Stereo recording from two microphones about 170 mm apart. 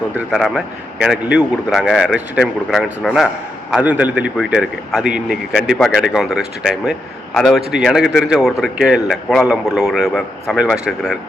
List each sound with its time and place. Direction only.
0.2 s a man's voice: centre (ahead or behind)